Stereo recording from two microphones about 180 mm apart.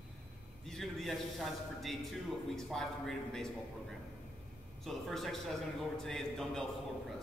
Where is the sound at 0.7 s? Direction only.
Centre (ahead or behind).